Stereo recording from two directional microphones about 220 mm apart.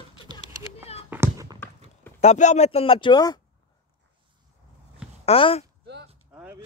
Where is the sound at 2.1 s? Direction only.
30° left (ahead or behind).